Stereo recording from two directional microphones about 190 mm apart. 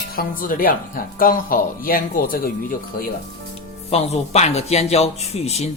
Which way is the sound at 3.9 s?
35° left (ahead or behind).